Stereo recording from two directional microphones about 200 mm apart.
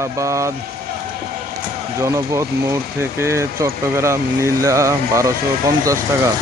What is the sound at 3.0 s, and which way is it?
Speech, 10° right (ahead or behind).